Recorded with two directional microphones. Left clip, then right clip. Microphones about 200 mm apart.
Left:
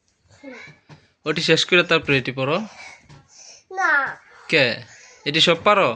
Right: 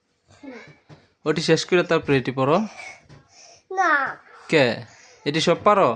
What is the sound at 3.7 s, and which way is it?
Babbling, 35° right (ahead or behind).